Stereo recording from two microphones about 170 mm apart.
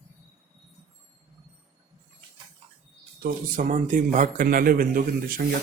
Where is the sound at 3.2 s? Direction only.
55° right (ahead or behind).